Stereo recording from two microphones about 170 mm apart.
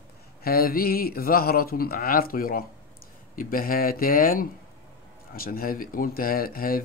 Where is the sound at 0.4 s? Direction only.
60° left (ahead or behind).